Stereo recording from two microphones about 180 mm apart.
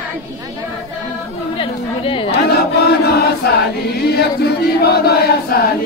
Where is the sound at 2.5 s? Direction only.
65° left (ahead or behind).